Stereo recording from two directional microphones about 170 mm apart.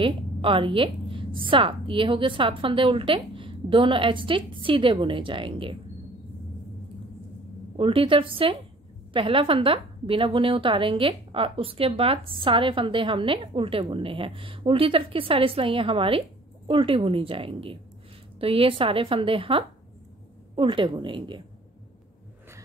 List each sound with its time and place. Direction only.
0.0 s a woman's voice: 30° right (ahead or behind)
7.7 s a woman's voice: 30° right (ahead or behind)